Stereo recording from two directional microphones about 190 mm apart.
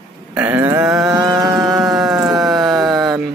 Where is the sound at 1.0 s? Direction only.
20° right (ahead or behind).